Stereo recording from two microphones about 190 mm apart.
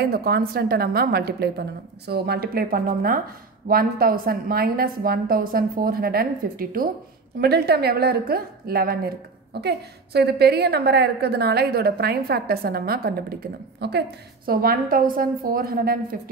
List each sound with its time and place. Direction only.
0.0 s a woman's voice: 55° right (ahead or behind)